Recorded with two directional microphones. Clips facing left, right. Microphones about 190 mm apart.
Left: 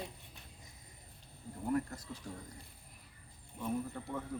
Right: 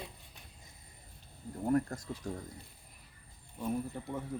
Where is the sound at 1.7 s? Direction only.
45° right (ahead or behind).